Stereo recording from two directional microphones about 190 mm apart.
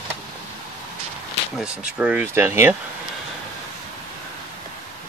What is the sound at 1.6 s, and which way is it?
Speech, 5° right (ahead or behind).